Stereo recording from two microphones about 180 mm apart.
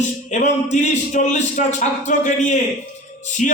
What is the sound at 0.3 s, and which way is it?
A man's voice, 40° left (ahead or behind).